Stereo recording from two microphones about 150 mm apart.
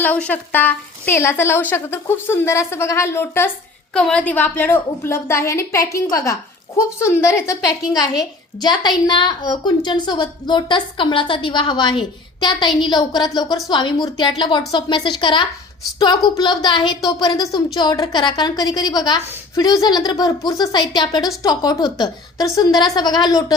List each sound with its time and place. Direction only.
0.0 s a woman's voice: 10° left (ahead or behind)